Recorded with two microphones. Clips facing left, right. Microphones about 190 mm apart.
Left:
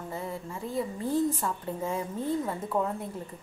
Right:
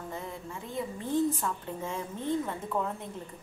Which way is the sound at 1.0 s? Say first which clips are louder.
Even; 40° left (ahead or behind).